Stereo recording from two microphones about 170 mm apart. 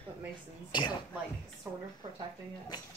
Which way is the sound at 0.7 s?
25° left (ahead or behind).